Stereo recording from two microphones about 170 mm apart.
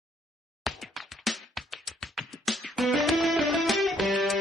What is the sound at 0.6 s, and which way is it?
Music, centre (ahead or behind).